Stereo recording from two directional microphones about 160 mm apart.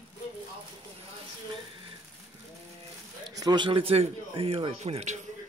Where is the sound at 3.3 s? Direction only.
25° right (ahead or behind); by 5.2 s 45° right (ahead or behind).